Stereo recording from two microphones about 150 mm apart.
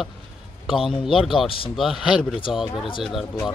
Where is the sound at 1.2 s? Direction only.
Centre (ahead or behind).